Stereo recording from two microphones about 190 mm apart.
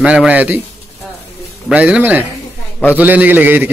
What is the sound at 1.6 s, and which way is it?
A man's voice, 5° right (ahead or behind).